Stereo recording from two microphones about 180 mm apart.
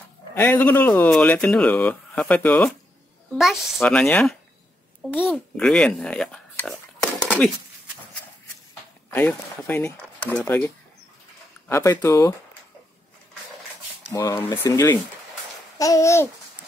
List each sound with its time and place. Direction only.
0.3 s speech: 10° left (ahead or behind)
9.1 s speech: 10° left (ahead or behind)
14.1 s speech: 20° left (ahead or behind)